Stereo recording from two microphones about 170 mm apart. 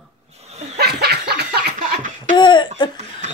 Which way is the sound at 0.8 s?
70° right (ahead or behind).